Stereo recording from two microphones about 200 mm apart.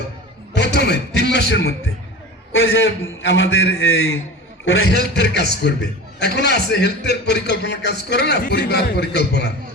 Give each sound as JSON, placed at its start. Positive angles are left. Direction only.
{"t": 0.5, "sound": "a man's voice", "side_deg": 55}
{"t": 2.5, "sound": "a man's voice", "side_deg": 75}
{"t": 5.1, "sound": "a man's voice", "side_deg": 55}